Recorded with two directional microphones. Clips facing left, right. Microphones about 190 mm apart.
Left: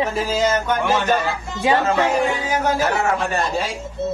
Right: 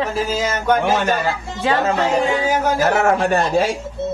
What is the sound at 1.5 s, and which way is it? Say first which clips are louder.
Howl: left 1 dB; 10° left (ahead or behind).